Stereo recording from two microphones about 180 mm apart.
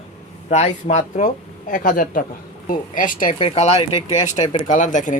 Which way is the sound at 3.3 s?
30° left (ahead or behind).